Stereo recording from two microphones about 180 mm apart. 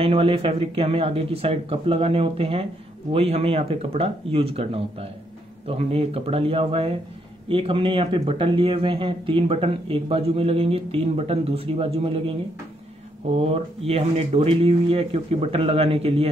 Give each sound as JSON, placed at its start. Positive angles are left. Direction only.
{"t": 0.0, "sound": "speech", "side_deg": -30}
{"t": 13.3, "sound": "speech", "side_deg": -35}